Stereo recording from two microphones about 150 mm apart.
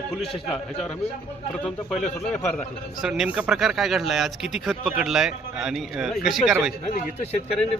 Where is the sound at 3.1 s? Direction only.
5° right (ahead or behind).